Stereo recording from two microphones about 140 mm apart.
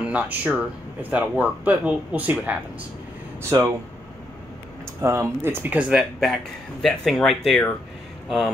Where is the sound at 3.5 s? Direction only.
30° right (ahead or behind).